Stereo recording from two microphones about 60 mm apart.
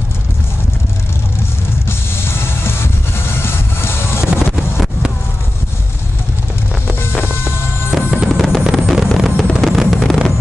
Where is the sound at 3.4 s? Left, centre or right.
Left.